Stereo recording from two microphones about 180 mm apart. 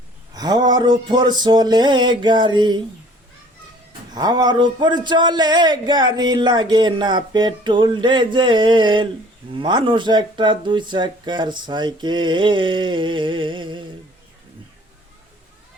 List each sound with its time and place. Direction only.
0.3 s speech: 20° right (ahead or behind)
4.1 s speech: 20° right (ahead or behind)